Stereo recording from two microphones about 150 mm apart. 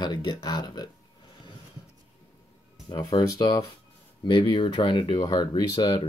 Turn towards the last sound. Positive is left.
turn(degrees=30)  # may be behind; listen again after turning